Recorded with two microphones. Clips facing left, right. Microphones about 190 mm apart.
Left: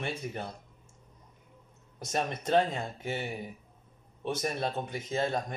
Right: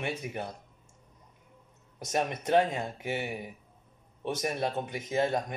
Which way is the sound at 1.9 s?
15° right (ahead or behind).